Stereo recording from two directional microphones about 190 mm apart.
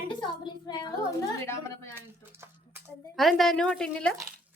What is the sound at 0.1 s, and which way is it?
A woman's voice, 25° left (ahead or behind).